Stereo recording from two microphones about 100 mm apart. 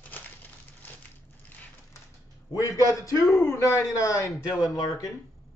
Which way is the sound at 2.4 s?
35° left (ahead or behind).